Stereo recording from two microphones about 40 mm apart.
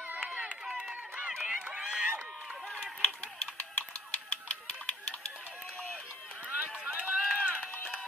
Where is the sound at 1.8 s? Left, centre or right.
Right.